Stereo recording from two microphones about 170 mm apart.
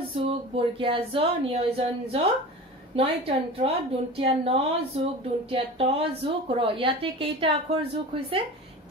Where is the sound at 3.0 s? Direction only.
35° right (ahead or behind).